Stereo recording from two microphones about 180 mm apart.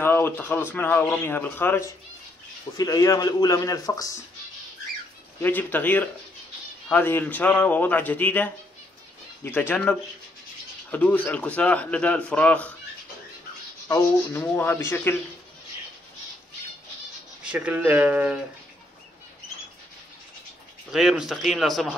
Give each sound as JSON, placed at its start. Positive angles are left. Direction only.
{"t": 0.0, "sound": "a man's voice", "side_deg": 10}
{"t": 5.4, "sound": "a man's voice", "side_deg": 10}
{"t": 13.8, "sound": "a man's voice", "side_deg": 15}
{"t": 17.5, "sound": "speech", "side_deg": -10}
{"t": 20.9, "sound": "speech", "side_deg": 0}